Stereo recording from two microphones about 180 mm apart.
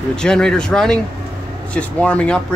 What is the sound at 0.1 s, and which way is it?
Speech, 5° left (ahead or behind).